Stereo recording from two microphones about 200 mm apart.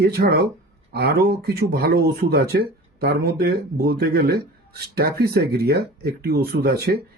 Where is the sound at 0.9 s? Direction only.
50° right (ahead or behind).